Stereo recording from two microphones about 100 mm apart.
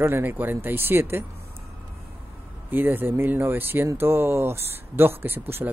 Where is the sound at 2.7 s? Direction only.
20° right (ahead or behind).